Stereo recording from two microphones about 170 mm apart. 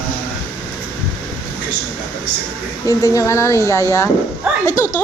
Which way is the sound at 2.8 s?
20° left (ahead or behind).